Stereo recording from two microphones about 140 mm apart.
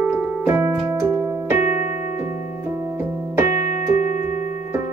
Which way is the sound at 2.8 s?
20° right (ahead or behind).